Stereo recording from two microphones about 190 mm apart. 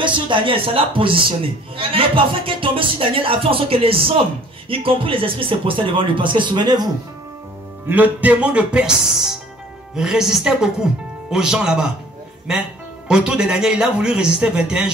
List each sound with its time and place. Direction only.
0.0 s speech: 25° right (ahead or behind)
7.9 s a woman's voice: 10° right (ahead or behind)
13.1 s a woman's voice: 5° right (ahead or behind)